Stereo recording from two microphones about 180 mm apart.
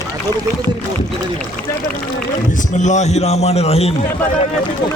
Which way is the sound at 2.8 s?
40° left (ahead or behind).